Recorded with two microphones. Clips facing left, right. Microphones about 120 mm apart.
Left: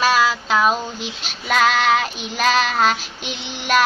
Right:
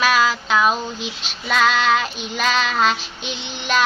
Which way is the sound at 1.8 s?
45° left (ahead or behind).